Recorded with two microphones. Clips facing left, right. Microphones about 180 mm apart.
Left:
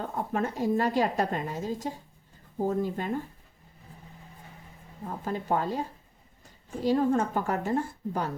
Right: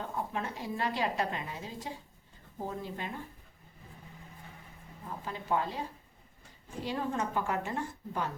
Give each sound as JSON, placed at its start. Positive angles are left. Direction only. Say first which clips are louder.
{"t": 0.2, "sound": "a woman's voice", "louder": "left 9 dB", "side_deg": 45}
{"t": 5.0, "sound": "a woman's voice", "louder": "left 6 dB", "side_deg": 45}
{"t": 6.8, "sound": "a woman's voice", "louder": "left 9 dB", "side_deg": 40}